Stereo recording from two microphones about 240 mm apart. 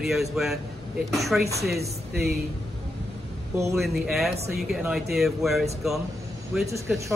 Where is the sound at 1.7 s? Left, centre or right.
Right.